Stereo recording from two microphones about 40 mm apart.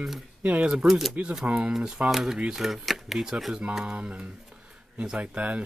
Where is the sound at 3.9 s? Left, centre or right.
Right.